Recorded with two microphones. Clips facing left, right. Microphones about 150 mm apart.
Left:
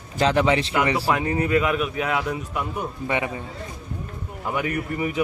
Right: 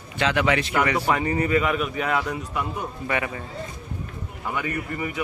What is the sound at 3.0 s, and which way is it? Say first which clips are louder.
Speech: left 1 dB; 20° left (ahead or behind).